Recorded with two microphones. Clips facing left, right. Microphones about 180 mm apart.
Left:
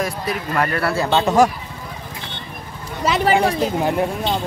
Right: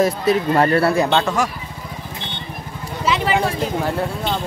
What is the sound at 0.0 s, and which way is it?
Speech, 25° right (ahead or behind).